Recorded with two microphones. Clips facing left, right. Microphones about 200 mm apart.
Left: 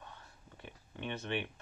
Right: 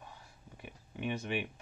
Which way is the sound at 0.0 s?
10° right (ahead or behind).